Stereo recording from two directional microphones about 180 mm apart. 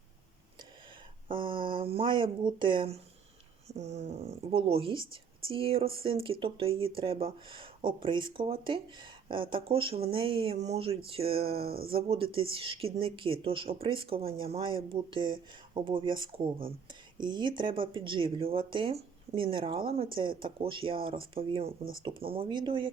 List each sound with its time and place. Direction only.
1.3 s speech: 30° right (ahead or behind)
11.6 s speech: 55° right (ahead or behind)
11.9 s speech: 30° right (ahead or behind)